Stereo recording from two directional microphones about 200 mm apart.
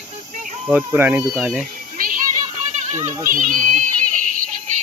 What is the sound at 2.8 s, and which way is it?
Speech, 35° right (ahead or behind).